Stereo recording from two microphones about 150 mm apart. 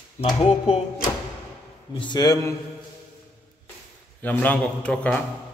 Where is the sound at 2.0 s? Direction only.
30° left (ahead or behind).